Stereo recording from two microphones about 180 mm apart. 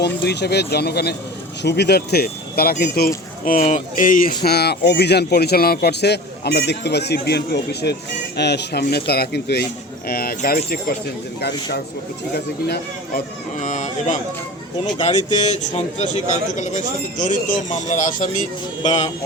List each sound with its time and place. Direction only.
0.0 s a man's voice: 70° left (ahead or behind)
3.4 s speech: 45° left (ahead or behind)
4.4 s a man's voice: 65° left (ahead or behind)
13.6 s speech: 45° left (ahead or behind)
14.9 s a man's voice: 25° left (ahead or behind)